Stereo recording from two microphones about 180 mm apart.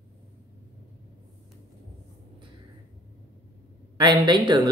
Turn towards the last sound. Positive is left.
turn(degrees=-25)  # may be behind; listen again after turning